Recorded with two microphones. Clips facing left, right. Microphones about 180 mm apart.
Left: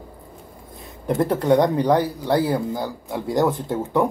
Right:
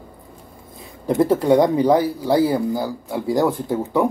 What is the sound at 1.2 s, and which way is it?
Speech, 5° right (ahead or behind).